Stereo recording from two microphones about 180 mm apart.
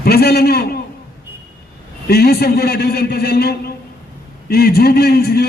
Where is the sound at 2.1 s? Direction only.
60° left (ahead or behind).